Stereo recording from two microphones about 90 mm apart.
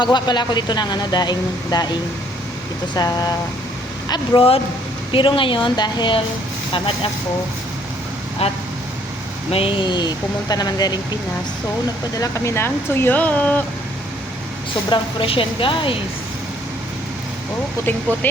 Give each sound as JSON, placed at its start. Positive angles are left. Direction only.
{"t": 0.0, "sound": "speech", "side_deg": 55}
{"t": 4.4, "sound": "speech", "side_deg": 90}
{"t": 5.1, "sound": "a woman's voice", "side_deg": 75}
{"t": 6.7, "sound": "speech", "side_deg": 85}
{"t": 9.5, "sound": "speech", "side_deg": 90}
{"t": 12.1, "sound": "speech", "side_deg": 40}
{"t": 12.5, "sound": "speech", "side_deg": 25}
{"t": 14.8, "sound": "a woman's voice", "side_deg": 70}